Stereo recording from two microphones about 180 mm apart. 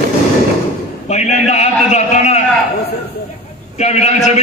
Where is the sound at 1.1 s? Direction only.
40° left (ahead or behind).